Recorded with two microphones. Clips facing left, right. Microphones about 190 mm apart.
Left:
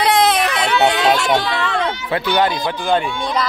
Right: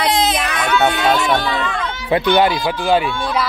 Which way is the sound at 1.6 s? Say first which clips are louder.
Left 3 dB; 70° left (ahead or behind).